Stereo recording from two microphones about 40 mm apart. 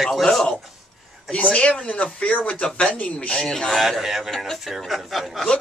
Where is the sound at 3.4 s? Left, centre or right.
Centre.